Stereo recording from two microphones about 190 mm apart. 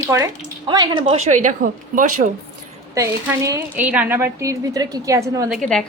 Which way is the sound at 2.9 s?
15° right (ahead or behind).